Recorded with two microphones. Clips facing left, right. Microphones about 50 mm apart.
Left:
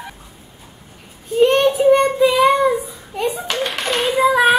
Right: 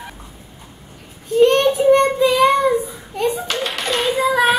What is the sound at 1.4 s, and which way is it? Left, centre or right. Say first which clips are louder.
Child singing: even; centre.